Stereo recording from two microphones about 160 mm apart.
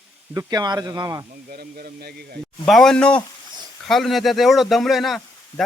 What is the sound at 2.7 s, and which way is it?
A man's voice, 5° left (ahead or behind).